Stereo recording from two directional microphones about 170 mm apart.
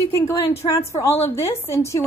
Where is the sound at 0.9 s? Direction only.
15° left (ahead or behind).